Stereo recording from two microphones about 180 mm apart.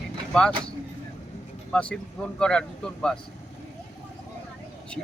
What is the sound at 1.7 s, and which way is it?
Speech, 5° left (ahead or behind).